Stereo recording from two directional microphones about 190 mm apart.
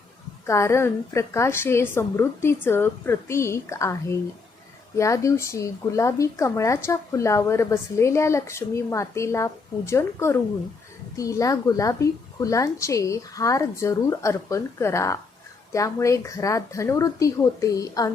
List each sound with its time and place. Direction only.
0.4 s a woman's voice: 15° left (ahead or behind)